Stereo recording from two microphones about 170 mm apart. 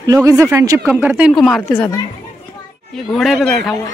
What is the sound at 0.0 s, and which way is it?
Speech, 20° right (ahead or behind).